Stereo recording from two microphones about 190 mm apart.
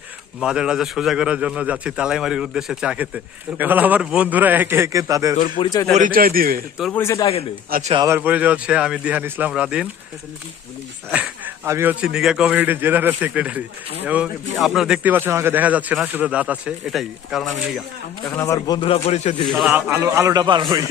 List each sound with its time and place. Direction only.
0.3 s a man's voice: 5° right (ahead or behind)
5.4 s a man's voice: 25° left (ahead or behind)
5.9 s a man's voice: 45° right (ahead or behind)
6.9 s a man's voice: 15° left (ahead or behind)
7.7 s a man's voice: 40° right (ahead or behind)
7.9 s speech: 15° right (ahead or behind)
11.1 s speech: 10° right (ahead or behind)
18.3 s a man's voice: 15° left (ahead or behind)
19.0 s a man's voice: 35° left (ahead or behind)
19.5 s speech: 5° right (ahead or behind); by 20.8 s 20° right (ahead or behind)